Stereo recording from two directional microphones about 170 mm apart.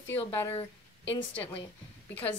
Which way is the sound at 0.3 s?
15° left (ahead or behind).